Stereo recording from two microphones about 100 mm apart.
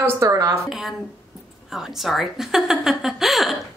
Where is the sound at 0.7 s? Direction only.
Centre (ahead or behind).